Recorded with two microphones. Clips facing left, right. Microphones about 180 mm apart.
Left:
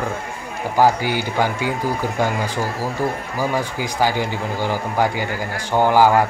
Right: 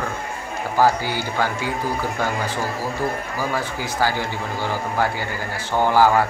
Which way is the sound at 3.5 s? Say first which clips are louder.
Left 2 dB; 15° left (ahead or behind).